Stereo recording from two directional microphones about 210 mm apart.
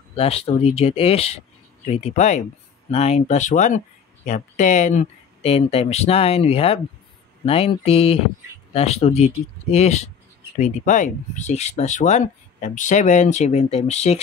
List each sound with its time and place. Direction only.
0.1 s speech: 30° left (ahead or behind)